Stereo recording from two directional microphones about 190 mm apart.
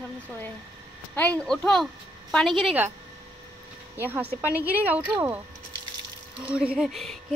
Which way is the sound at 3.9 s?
10° right (ahead or behind).